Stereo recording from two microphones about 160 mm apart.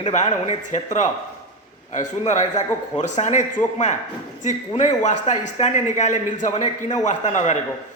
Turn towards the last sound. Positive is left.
turn(degrees=50)  # may be behind; listen again after turning